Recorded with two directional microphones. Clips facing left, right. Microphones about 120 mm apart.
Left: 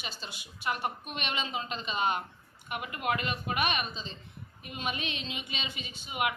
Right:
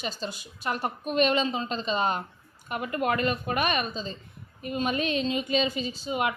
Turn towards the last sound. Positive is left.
turn(degrees=-35)  # may be behind; listen again after turning